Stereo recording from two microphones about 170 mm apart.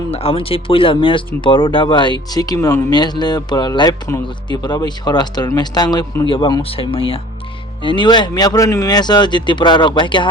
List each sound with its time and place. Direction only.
0.1 s speech: 35° left (ahead or behind)